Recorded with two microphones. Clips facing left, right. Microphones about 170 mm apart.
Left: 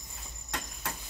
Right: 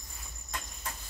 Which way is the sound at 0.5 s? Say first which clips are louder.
Left 3 dB; 75° left (ahead or behind).